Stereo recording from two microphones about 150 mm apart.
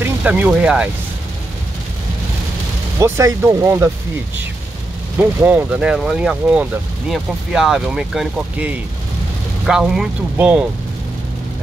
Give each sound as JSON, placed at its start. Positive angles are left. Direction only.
{"t": 0.0, "sound": "speech", "side_deg": -10}
{"t": 3.0, "sound": "speech", "side_deg": -20}
{"t": 5.4, "sound": "speech", "side_deg": -10}
{"t": 9.7, "sound": "speech", "side_deg": -5}